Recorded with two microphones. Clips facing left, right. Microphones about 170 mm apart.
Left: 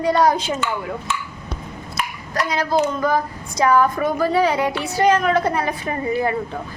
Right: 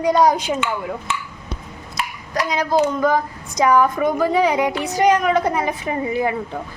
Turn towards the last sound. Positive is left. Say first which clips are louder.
# even
turn(degrees=-15)  # may be behind; listen again after turning